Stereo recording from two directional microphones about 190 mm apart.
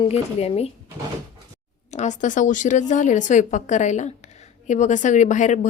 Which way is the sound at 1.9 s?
40° left (ahead or behind).